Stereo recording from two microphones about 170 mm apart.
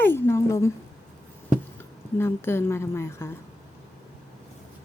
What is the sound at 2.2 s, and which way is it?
Speech, 15° left (ahead or behind).